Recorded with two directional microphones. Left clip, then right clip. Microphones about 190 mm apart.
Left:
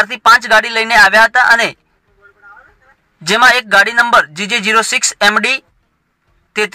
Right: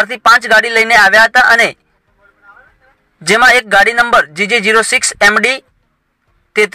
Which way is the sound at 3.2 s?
15° right (ahead or behind).